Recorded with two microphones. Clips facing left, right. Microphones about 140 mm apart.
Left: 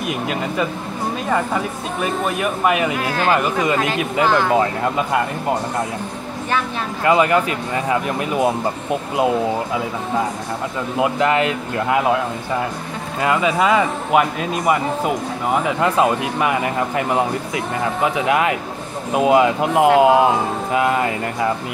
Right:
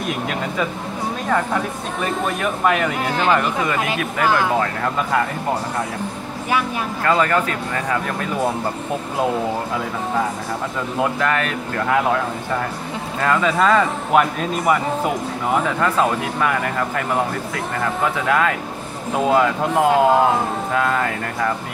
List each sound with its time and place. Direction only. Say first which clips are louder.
0.1 s a man's voice: left 3 dB; 5° left (ahead or behind)
7.1 s a man's voice: left 3 dB; 15° left (ahead or behind)
11.0 s a man's voice: left 3 dB; 20° left (ahead or behind)
13.2 s a man's voice: even; 10° left (ahead or behind)